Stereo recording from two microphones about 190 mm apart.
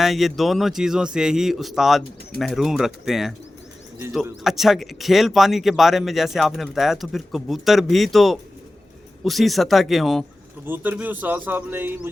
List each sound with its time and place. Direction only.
0.0 s speech: centre (ahead or behind)
4.4 s speech: centre (ahead or behind)
10.7 s a man's voice: 10° right (ahead or behind)